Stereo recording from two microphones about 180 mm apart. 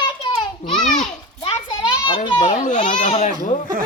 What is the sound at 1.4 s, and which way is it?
Children playing, 30° left (ahead or behind).